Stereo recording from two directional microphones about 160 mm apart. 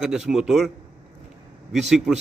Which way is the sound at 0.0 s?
5° right (ahead or behind).